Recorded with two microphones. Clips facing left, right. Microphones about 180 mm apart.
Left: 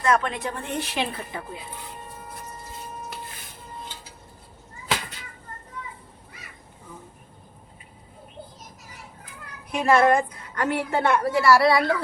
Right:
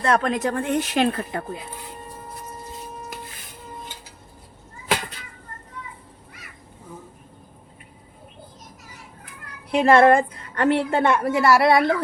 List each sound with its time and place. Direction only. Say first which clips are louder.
0.0 s a woman's voice: right 3 dB; 35° right (ahead or behind); by 1.5 s 60° right (ahead or behind)
9.7 s a woman's voice: right 4 dB; 30° right (ahead or behind)